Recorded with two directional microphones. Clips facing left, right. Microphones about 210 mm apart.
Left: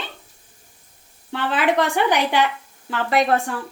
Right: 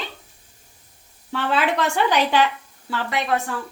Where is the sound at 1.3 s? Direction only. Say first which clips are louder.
Left 2 dB; 15° left (ahead or behind).